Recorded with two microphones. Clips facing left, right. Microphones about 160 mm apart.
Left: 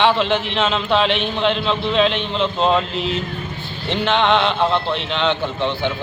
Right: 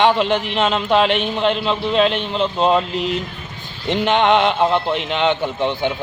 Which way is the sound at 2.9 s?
45° right (ahead or behind).